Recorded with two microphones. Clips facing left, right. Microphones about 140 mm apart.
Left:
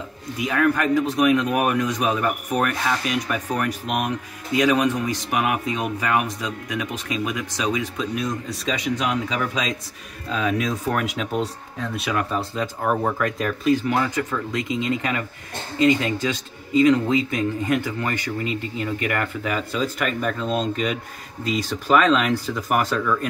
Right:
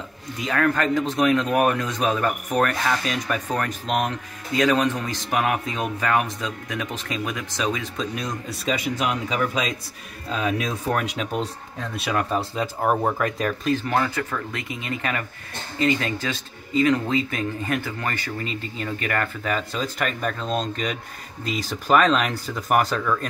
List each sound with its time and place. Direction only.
0.4 s speech: 10° left (ahead or behind)
8.1 s speech: centre (ahead or behind)
11.0 s speech: centre (ahead or behind)
13.7 s speech: 15° left (ahead or behind)
20.0 s speech: 5° left (ahead or behind)